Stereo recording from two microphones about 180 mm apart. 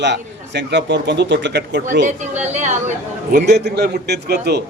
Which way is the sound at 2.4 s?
40° right (ahead or behind).